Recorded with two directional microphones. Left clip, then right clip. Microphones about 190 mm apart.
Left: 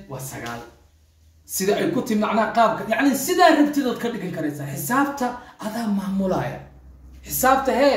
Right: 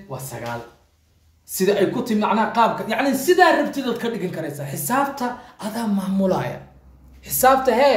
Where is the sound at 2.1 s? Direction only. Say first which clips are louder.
Right 1 dB; 45° right (ahead or behind).